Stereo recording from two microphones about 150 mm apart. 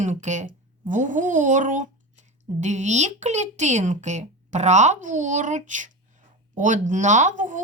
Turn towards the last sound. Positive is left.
turn(degrees=-60)  # may be behind; listen again after turning